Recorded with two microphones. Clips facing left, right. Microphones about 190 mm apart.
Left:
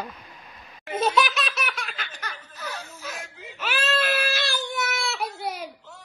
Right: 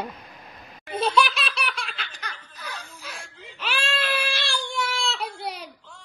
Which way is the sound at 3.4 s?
5° left (ahead or behind).